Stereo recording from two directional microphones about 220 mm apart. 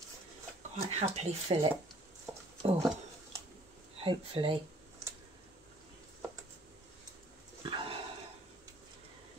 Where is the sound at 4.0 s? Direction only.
25° right (ahead or behind).